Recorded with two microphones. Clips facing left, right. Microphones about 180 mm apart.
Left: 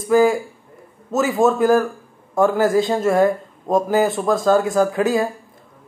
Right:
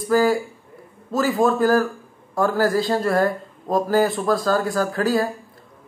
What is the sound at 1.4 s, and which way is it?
Speech, 20° left (ahead or behind).